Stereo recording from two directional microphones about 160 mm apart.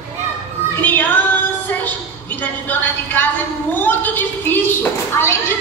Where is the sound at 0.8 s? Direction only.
10° left (ahead or behind).